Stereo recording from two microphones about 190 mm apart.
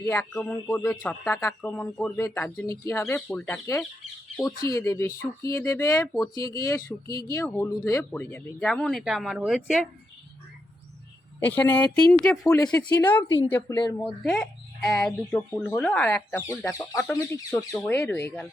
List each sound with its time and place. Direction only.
0.0 s speech: 15° left (ahead or behind)
11.3 s speech: 10° left (ahead or behind)
12.5 s speech: 20° left (ahead or behind)
14.2 s speech: 5° left (ahead or behind)